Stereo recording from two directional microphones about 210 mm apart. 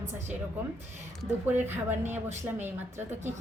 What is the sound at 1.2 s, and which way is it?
A woman's voice, 10° right (ahead or behind).